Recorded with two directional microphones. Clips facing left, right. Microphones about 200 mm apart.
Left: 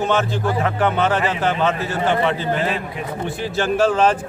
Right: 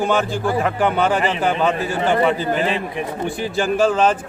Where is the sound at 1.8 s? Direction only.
Centre (ahead or behind).